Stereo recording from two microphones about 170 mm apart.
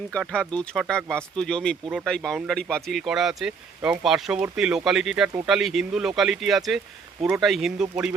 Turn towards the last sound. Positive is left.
turn(degrees=0)  # may be behind; listen again after turning